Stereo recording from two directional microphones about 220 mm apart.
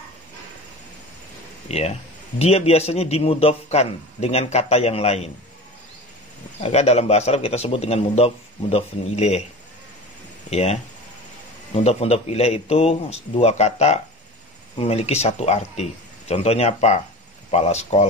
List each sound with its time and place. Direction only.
1.7 s a man's voice: 30° left (ahead or behind)
6.6 s a man's voice: 30° left (ahead or behind)
10.5 s a man's voice: 30° left (ahead or behind)